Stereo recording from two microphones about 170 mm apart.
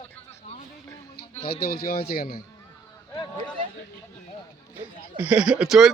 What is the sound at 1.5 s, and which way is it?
Speech, 65° left (ahead or behind).